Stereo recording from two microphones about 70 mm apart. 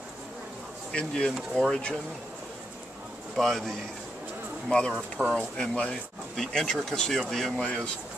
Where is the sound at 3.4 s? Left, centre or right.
Centre.